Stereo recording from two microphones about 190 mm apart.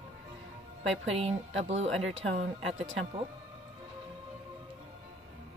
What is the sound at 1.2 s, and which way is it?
Speech, 35° right (ahead or behind).